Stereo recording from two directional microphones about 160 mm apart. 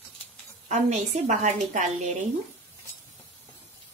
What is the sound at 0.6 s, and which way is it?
Speech, 45° right (ahead or behind).